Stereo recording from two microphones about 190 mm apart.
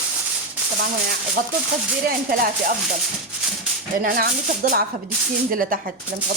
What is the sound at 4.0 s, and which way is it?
Speech, 50° right (ahead or behind).